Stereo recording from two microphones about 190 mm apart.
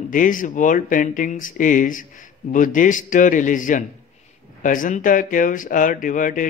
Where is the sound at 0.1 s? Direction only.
45° left (ahead or behind).